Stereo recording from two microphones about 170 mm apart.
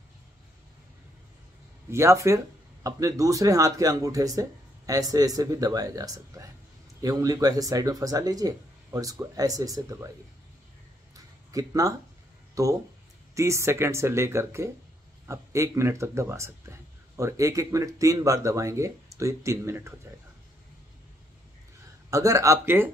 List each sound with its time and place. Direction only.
1.9 s speech: 15° right (ahead or behind)
11.1 s a sound: 20° right (ahead or behind)
12.6 s speech: 20° right (ahead or behind)
22.1 s speech: 20° right (ahead or behind)